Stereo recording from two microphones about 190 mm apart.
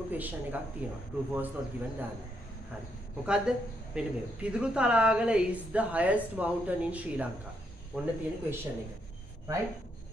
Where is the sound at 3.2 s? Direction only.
5° right (ahead or behind).